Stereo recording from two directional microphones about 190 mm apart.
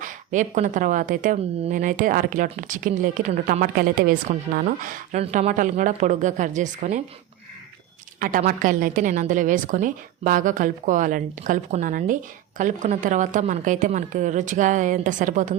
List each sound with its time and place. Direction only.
0.0 s a woman's voice: 40° right (ahead or behind)
8.2 s a woman's voice: 45° right (ahead or behind)